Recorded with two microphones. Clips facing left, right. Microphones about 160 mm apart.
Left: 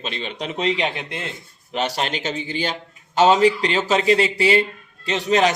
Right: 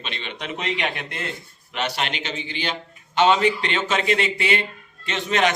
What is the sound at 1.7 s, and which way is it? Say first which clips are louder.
A man's voice: left 3 dB; 35° left (ahead or behind).